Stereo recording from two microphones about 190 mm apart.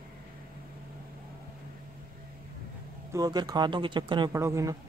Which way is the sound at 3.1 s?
20° right (ahead or behind).